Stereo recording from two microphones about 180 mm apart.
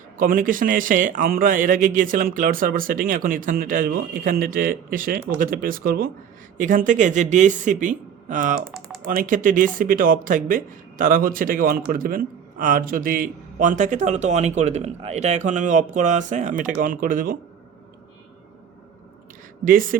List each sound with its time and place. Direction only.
0.2 s speech: 50° right (ahead or behind)
19.6 s speech: 50° right (ahead or behind)